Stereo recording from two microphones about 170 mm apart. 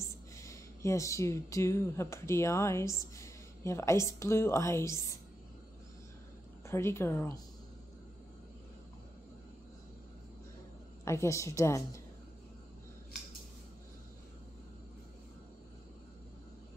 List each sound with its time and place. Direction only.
0.0 s speech: 15° left (ahead or behind)
6.7 s a woman's voice: 15° left (ahead or behind)
11.1 s a woman's voice: 15° left (ahead or behind)